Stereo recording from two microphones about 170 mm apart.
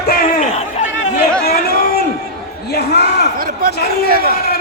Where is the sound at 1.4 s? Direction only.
65° left (ahead or behind).